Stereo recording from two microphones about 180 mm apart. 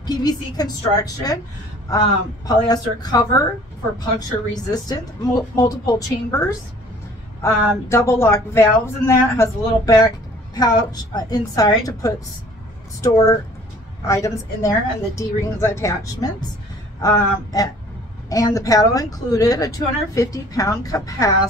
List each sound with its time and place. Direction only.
0.0 s a woman's voice: 20° left (ahead or behind)